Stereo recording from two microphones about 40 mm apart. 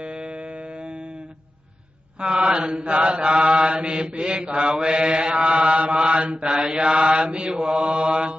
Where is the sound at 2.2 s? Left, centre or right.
Right.